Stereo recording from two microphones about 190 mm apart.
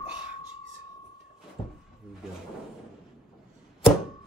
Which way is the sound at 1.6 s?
30° left (ahead or behind).